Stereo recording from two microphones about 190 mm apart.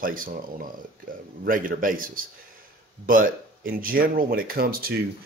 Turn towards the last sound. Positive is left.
turn(degrees=-50)  # may be behind; listen again after turning